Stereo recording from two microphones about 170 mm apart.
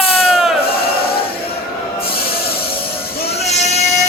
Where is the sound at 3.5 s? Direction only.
40° left (ahead or behind).